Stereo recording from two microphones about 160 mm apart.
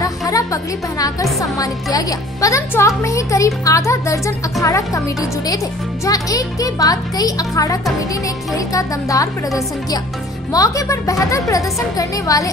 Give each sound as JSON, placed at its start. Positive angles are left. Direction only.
{"t": 0.0, "sound": "a woman's voice", "side_deg": 20}
{"t": 6.0, "sound": "a woman's voice", "side_deg": 20}
{"t": 10.5, "sound": "a woman's voice", "side_deg": 20}